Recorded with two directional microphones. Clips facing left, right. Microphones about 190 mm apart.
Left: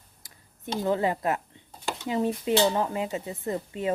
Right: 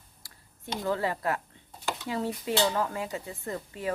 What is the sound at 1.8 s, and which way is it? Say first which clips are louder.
A woman's voice: left 4 dB; 20° left (ahead or behind).